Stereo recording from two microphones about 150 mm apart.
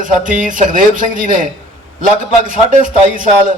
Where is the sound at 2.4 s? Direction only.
60° right (ahead or behind).